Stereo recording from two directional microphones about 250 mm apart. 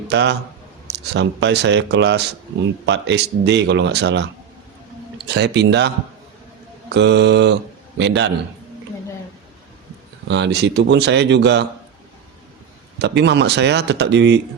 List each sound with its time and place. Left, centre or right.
0.1 s speech: right
6.9 s speech: right
10.2 s speech: right
13.0 s speech: right